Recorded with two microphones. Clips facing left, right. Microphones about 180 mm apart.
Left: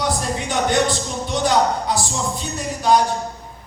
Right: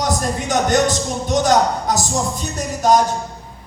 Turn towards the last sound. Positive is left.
turn(degrees=-45)  # may be behind; listen again after turning